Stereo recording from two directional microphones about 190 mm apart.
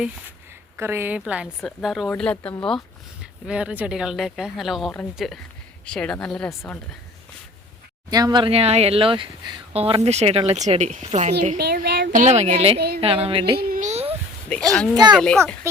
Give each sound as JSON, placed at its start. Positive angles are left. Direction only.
{"t": 0.8, "sound": "speech", "side_deg": -15}
{"t": 8.1, "sound": "speech", "side_deg": -20}
{"t": 11.5, "sound": "speech", "side_deg": -55}
{"t": 12.1, "sound": "a woman's voice", "side_deg": -35}
{"t": 13.6, "sound": "a sound", "side_deg": -45}
{"t": 14.5, "sound": "speech", "side_deg": 5}
{"t": 15.6, "sound": "speech", "side_deg": -15}